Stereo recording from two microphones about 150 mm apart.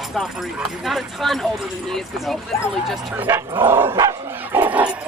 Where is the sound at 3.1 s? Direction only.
15° right (ahead or behind).